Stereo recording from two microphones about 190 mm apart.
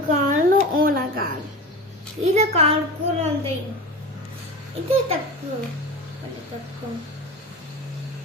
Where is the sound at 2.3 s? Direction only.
35° right (ahead or behind).